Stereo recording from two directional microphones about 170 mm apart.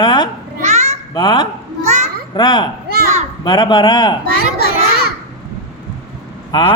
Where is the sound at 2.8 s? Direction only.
65° right (ahead or behind).